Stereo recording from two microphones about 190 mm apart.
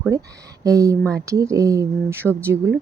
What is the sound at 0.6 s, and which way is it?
Speech, 15° right (ahead or behind).